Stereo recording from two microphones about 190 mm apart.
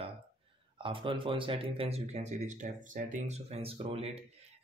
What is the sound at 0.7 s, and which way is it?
Speech, 25° right (ahead or behind).